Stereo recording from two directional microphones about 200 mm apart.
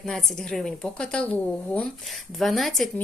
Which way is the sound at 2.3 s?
Centre (ahead or behind).